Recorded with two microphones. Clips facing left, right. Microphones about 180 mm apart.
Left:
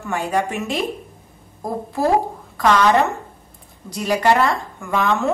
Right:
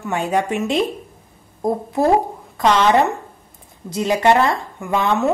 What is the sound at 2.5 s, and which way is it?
Speech, 20° right (ahead or behind).